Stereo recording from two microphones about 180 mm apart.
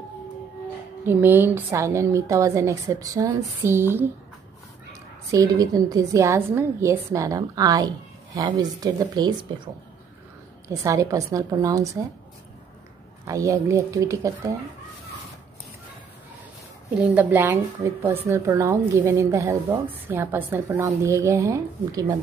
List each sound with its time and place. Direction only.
1.0 s a woman's voice: 10° right (ahead or behind)
5.3 s a woman's voice: 20° right (ahead or behind)
10.7 s a woman's voice: 15° right (ahead or behind)
13.3 s a woman's voice: 15° right (ahead or behind)
17.1 s a woman's voice: 10° right (ahead or behind)